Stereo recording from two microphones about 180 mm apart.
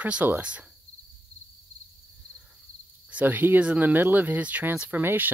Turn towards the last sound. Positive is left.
turn(degrees=-10)  # may be behind; listen again after turning